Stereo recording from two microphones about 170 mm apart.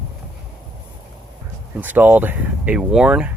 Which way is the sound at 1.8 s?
10° right (ahead or behind).